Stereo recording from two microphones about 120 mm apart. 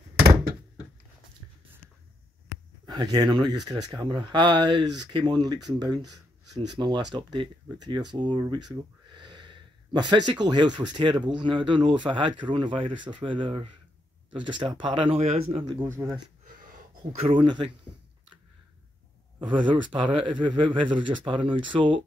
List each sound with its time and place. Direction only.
2.9 s speech: 35° right (ahead or behind); by 15.7 s 55° right (ahead or behind)
15.8 s speech: 20° right (ahead or behind)
17.3 s speech: 45° right (ahead or behind)
19.4 s speech: 40° right (ahead or behind)